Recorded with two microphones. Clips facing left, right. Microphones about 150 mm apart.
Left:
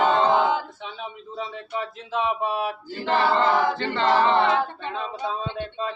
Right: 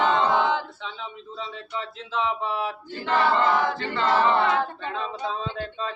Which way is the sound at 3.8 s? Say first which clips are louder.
Left 2 dB; 25° left (ahead or behind).